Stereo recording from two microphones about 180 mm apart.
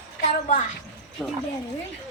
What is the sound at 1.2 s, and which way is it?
Speech, 5° left (ahead or behind).